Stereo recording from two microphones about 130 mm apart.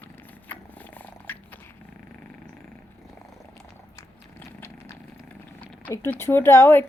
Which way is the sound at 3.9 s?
20° left (ahead or behind).